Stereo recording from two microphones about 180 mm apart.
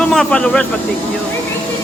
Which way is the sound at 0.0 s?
5° left (ahead or behind).